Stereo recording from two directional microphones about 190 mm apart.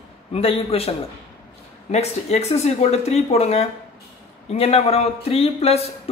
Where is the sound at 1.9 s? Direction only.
35° left (ahead or behind).